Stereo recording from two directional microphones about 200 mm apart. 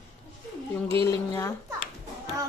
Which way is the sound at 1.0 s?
15° left (ahead or behind).